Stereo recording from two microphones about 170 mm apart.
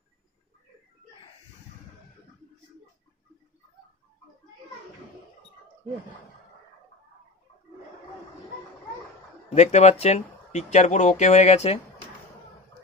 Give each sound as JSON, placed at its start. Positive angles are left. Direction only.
{"t": 9.5, "sound": "speech", "side_deg": 40}